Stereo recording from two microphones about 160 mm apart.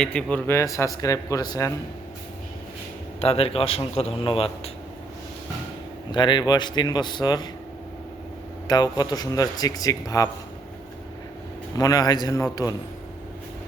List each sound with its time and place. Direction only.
0.0 s speech: 5° left (ahead or behind); by 1.7 s 20° left (ahead or behind)
3.2 s speech: 40° left (ahead or behind)
6.1 s speech: 30° left (ahead or behind)
8.6 s speech: 25° left (ahead or behind)
11.8 s speech: 25° left (ahead or behind)